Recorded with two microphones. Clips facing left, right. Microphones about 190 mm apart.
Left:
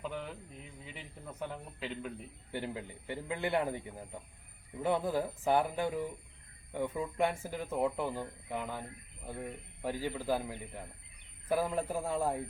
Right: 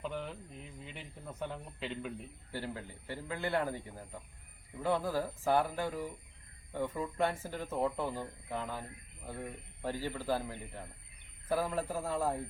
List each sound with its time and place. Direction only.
0.0 s speech: centre (ahead or behind)
2.5 s a man's voice: 20° left (ahead or behind)